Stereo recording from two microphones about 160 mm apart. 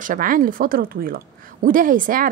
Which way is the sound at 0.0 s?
55° right (ahead or behind).